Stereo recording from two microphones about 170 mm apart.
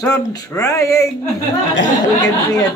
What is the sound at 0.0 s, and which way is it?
A woman's voice, 20° left (ahead or behind).